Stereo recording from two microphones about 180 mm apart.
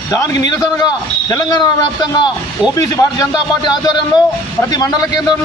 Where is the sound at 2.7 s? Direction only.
20° left (ahead or behind).